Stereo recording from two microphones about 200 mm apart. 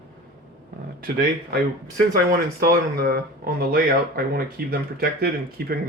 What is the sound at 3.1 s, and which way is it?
Speech, 50° right (ahead or behind).